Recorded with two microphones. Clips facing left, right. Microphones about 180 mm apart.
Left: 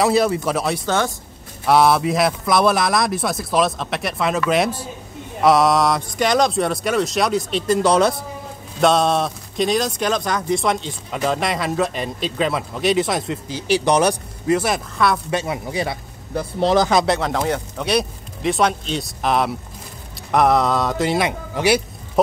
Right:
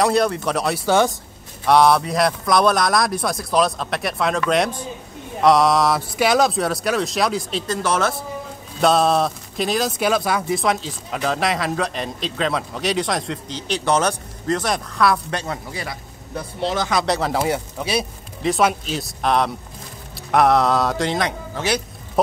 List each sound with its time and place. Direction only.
0.0 s speech: 5° left (ahead or behind)
0.8 s speech: 15° right (ahead or behind)
1.7 s speech: 5° left (ahead or behind)
7.6 s speech: 15° left (ahead or behind)
8.8 s speech: centre (ahead or behind)
15.8 s a sound: 25° left (ahead or behind)
16.6 s speech: 40° left (ahead or behind)
17.0 s speech: centre (ahead or behind)